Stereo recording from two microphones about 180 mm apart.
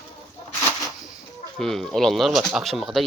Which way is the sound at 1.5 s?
Centre (ahead or behind).